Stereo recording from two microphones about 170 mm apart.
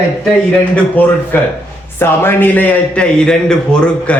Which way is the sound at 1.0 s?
10° left (ahead or behind).